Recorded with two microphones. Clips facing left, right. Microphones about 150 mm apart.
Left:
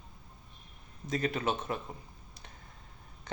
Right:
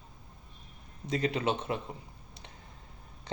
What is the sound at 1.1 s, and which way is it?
Speech, 25° right (ahead or behind).